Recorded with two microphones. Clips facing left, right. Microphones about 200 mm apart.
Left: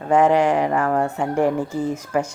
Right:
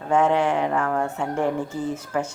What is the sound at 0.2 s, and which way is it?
Speech, 10° left (ahead or behind).